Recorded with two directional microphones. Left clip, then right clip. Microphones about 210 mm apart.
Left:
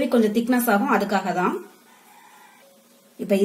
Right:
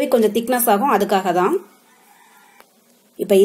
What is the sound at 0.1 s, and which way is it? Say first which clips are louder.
Speech: right 4 dB; 35° right (ahead or behind).